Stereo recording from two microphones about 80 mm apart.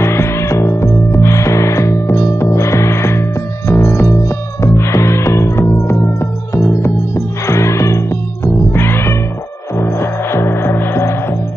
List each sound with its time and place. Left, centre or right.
0.0 s music: left
8.7 s cat: left
9.8 s music: left